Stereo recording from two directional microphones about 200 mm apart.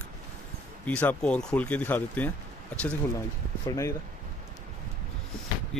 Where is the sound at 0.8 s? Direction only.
5° left (ahead or behind).